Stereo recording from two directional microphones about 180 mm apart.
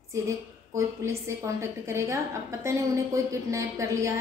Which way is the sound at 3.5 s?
15° right (ahead or behind).